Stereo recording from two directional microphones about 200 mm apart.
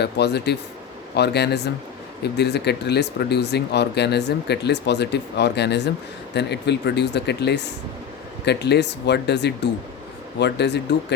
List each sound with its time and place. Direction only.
0.0 s speech: 55° left (ahead or behind)